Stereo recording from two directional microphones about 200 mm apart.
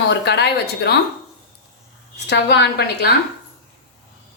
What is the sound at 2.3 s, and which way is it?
Speech, 55° left (ahead or behind).